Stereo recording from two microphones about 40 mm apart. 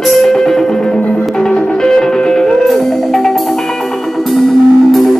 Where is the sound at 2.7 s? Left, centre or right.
Centre.